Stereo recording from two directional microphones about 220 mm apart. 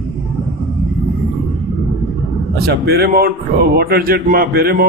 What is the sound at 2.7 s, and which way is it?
A man's voice, 45° right (ahead or behind).